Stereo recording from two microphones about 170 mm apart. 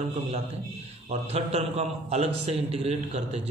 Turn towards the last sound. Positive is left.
turn(degrees=-35)  # may be behind; listen again after turning